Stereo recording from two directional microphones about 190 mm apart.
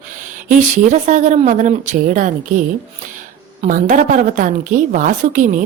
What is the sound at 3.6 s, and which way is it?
A woman's voice, 40° right (ahead or behind).